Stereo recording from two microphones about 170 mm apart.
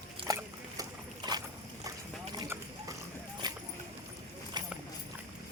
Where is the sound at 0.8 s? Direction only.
25° right (ahead or behind).